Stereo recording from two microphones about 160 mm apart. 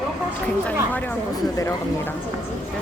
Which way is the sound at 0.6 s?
10° left (ahead or behind).